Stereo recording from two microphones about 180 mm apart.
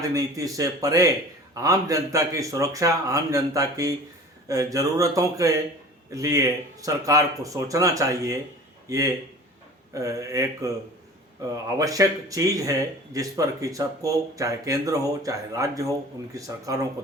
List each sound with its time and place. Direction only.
0.0 s speech: 20° right (ahead or behind)